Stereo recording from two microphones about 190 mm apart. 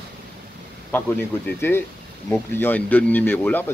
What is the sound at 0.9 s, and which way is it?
Speech, 10° left (ahead or behind).